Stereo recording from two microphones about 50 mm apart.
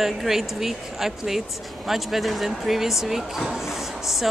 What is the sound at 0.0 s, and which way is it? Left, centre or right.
A woman's voice, centre.